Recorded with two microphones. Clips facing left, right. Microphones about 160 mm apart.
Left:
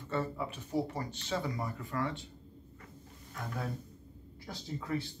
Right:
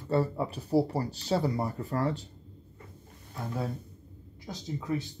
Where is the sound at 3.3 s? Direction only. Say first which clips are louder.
Right 5 dB; 25° right (ahead or behind).